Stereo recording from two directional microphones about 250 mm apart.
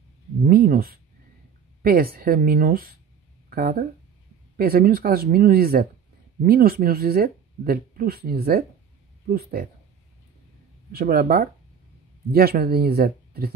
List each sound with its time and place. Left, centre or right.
0.5 s speech: right
3.4 s a sound: right
4.6 s speech: right
10.9 s speech: right